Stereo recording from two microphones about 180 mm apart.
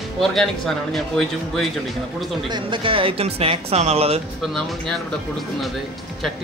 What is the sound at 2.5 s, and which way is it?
Speech, 30° right (ahead or behind).